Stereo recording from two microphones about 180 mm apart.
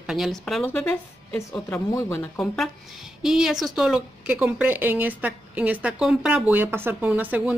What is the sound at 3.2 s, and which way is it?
A woman's voice, 5° right (ahead or behind).